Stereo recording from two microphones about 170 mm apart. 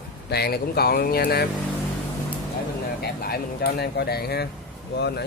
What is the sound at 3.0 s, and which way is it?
Speech, 65° left (ahead or behind).